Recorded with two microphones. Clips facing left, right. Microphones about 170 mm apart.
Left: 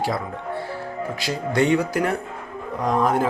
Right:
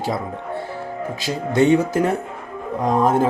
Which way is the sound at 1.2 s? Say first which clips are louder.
Right 4 dB; 20° right (ahead or behind).